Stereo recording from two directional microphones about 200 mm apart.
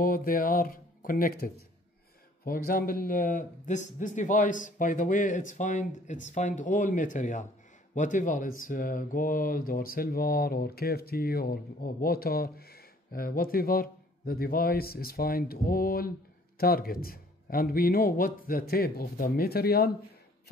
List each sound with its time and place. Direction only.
0.0 s speech: 45° left (ahead or behind)